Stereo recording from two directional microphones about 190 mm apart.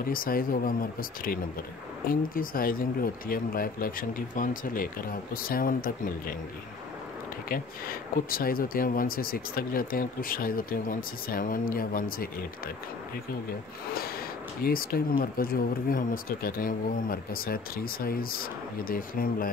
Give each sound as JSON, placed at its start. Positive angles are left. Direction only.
{"t": 0.1, "sound": "speech", "side_deg": 50}
{"t": 7.4, "sound": "speech", "side_deg": 50}
{"t": 14.6, "sound": "speech", "side_deg": 50}